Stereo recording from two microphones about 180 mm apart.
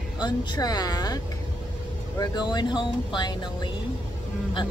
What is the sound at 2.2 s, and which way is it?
Speech, 25° left (ahead or behind).